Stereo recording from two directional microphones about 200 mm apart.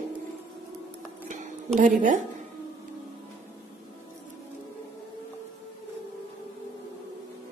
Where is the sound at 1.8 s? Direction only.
40° right (ahead or behind).